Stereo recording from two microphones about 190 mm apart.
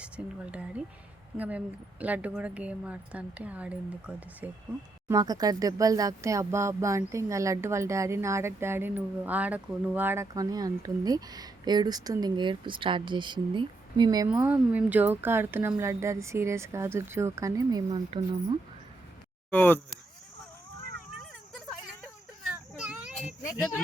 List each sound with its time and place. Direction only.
0.2 s speech: 5° right (ahead or behind)
0.5 s a sound: 5° right (ahead or behind)
1.4 s speech: 5° right (ahead or behind)
5.0 s speech: 20° right (ahead or behind)
14.3 s speech: 10° right (ahead or behind)
19.5 s speech: 10° left (ahead or behind)
21.5 s a sound: centre (ahead or behind)
23.0 s children playing: centre (ahead or behind)
23.6 s speech: 10° left (ahead or behind)